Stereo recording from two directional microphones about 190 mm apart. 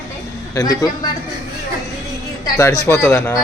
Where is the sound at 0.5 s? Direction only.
20° left (ahead or behind).